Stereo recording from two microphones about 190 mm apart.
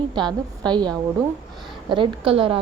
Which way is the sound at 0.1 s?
25° right (ahead or behind).